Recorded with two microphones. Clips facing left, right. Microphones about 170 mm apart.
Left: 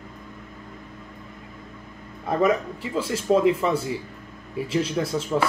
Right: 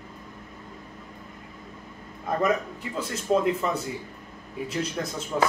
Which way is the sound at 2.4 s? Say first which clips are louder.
Left 4 dB; 5° left (ahead or behind).